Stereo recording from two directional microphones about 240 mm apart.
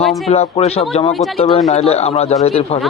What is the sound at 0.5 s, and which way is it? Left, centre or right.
Speech, left.